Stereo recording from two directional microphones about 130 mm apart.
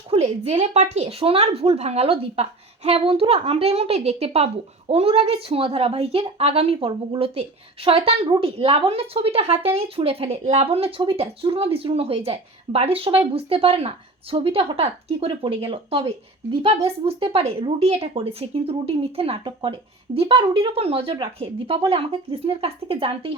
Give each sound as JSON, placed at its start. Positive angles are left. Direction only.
{"t": 0.1, "sound": "a woman's voice", "side_deg": -55}